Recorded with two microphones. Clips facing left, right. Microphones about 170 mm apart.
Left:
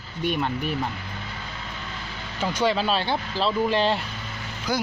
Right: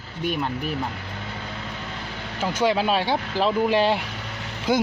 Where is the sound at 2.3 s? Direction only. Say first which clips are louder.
Right 1 dB; 10° right (ahead or behind).